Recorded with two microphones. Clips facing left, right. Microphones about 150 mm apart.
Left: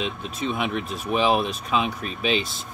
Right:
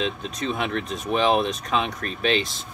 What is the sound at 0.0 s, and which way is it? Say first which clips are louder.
Speech: right 1 dB; 5° left (ahead or behind).